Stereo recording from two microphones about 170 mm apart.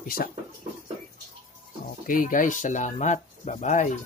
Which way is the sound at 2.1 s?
50° left (ahead or behind).